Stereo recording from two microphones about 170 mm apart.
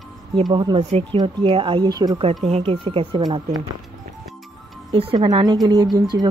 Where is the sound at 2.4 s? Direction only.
35° right (ahead or behind).